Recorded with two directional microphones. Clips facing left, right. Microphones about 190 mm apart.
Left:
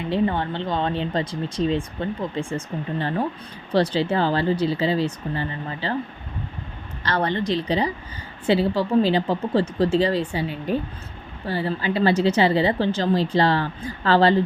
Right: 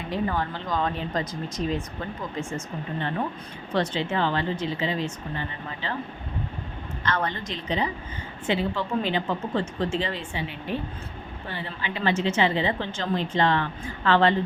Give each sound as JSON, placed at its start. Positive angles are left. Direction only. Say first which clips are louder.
{"t": 0.1, "sound": "speech", "louder": "left 5 dB", "side_deg": 30}
{"t": 7.0, "sound": "speech", "louder": "left 5 dB", "side_deg": 35}